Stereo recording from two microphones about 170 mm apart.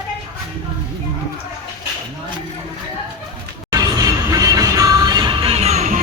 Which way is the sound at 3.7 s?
20° right (ahead or behind).